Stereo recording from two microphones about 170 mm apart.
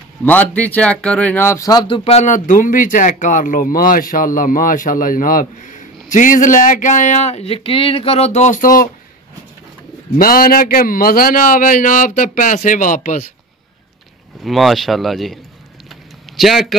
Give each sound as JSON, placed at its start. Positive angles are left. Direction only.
{"t": 0.2, "sound": "speech", "side_deg": 10}
{"t": 2.0, "sound": "a man's voice", "side_deg": 45}
{"t": 10.1, "sound": "a man's voice", "side_deg": 60}
{"t": 14.4, "sound": "speech", "side_deg": 0}
{"t": 15.9, "sound": "a sound", "side_deg": 0}